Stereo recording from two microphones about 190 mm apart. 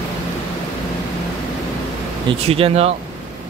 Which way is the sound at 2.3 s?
30° right (ahead or behind).